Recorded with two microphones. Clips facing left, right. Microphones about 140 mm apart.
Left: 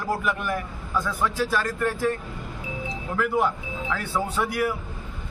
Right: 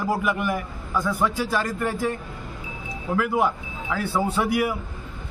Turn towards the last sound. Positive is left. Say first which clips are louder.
# right 3 dB
turn(degrees=-10)  # may be behind; listen again after turning